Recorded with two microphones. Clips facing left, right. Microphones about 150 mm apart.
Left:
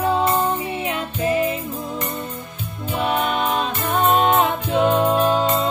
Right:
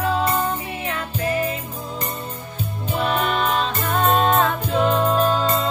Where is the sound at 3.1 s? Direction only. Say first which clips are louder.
Left 1 dB; 15° left (ahead or behind).